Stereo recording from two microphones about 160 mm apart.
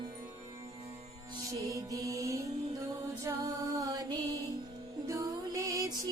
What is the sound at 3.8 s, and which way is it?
Mantra, 25° right (ahead or behind).